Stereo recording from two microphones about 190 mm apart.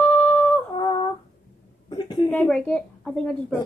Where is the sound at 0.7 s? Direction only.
20° left (ahead or behind).